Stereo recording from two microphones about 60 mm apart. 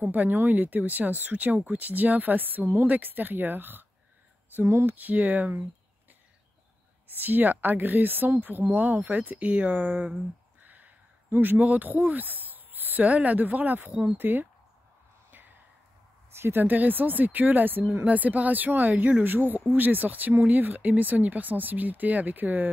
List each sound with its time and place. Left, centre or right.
0.0 s speech: right
4.6 s speech: right
4.8 s speech: right
7.1 s speech: right
16.3 s speech: right